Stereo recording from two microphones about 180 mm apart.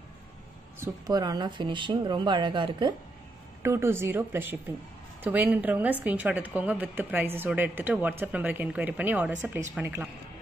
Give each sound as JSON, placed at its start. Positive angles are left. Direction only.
{"t": 0.7, "sound": "speech", "side_deg": -20}
{"t": 3.6, "sound": "a woman's voice", "side_deg": -15}